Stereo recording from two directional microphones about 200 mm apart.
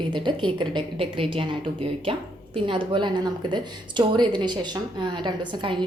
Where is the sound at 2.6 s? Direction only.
25° right (ahead or behind).